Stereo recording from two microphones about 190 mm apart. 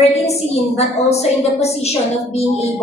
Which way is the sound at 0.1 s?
35° left (ahead or behind).